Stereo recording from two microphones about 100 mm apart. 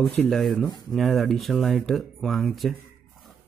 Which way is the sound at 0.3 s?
Centre (ahead or behind).